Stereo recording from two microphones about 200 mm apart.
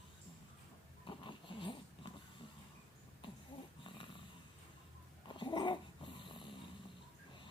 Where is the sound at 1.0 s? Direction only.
25° left (ahead or behind).